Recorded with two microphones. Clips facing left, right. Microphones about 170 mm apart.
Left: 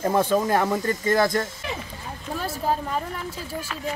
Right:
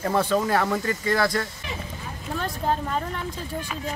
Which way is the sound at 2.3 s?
5° left (ahead or behind).